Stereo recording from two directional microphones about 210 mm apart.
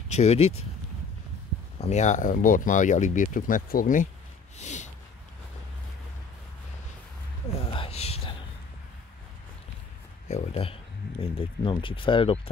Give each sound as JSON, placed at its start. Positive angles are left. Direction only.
{"t": 0.1, "sound": "speech", "side_deg": 30}
{"t": 1.8, "sound": "speech", "side_deg": 35}
{"t": 4.6, "sound": "snort", "side_deg": 35}
{"t": 7.5, "sound": "whispering", "side_deg": 25}
{"t": 10.2, "sound": "speech", "side_deg": 30}